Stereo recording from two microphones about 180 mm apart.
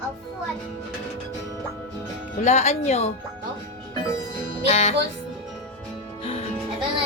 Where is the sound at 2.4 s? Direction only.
40° left (ahead or behind).